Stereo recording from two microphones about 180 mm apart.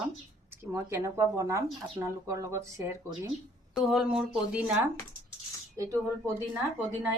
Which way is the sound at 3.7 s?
Centre (ahead or behind).